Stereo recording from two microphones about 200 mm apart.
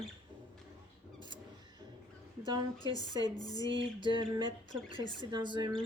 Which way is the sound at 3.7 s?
25° right (ahead or behind).